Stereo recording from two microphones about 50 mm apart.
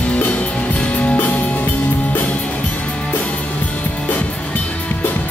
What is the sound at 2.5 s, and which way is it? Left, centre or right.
Music, left.